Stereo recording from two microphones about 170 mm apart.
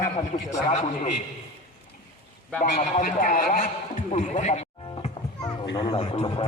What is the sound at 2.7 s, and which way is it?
A man's voice, 50° left (ahead or behind).